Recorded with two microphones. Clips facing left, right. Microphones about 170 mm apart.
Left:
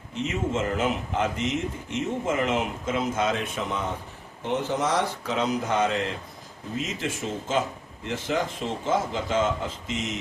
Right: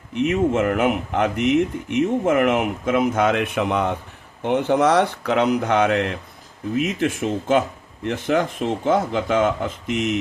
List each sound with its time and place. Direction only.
0.2 s speech: 60° right (ahead or behind)